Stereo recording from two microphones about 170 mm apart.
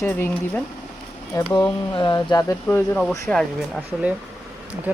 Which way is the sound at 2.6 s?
10° left (ahead or behind).